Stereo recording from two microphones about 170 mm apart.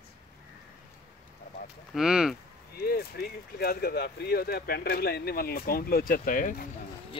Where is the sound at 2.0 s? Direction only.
5° right (ahead or behind).